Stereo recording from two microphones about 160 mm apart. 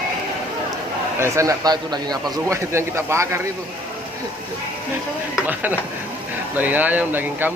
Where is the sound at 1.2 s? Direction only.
20° right (ahead or behind).